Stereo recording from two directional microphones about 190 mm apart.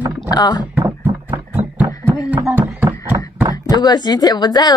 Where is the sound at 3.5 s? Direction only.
20° left (ahead or behind).